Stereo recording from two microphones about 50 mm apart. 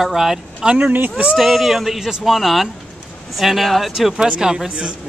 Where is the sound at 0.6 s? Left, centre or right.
Right.